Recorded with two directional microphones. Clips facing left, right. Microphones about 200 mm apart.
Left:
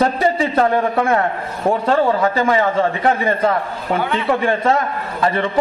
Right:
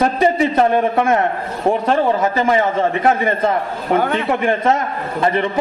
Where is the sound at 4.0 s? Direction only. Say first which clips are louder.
Right 2 dB; 45° right (ahead or behind).